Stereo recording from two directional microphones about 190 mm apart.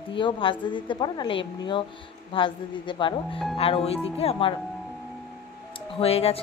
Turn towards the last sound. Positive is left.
turn(degrees=30)  # may be behind; listen again after turning